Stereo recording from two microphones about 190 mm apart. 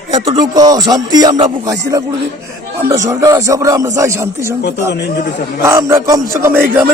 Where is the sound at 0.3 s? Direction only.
20° right (ahead or behind).